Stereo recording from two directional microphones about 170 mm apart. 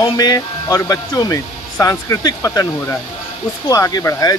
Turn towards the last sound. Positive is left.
turn(degrees=20)  # may be behind; listen again after turning